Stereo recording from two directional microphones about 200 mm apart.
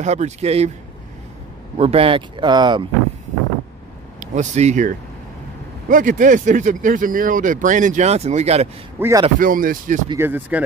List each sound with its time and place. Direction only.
0.0 s speech: 35° right (ahead or behind)
1.8 s speech: 30° right (ahead or behind)
4.2 s speech: 35° right (ahead or behind)
9.0 s speech: 10° right (ahead or behind)
9.4 s speech: 45° right (ahead or behind)
10.0 s speech: 10° right (ahead or behind)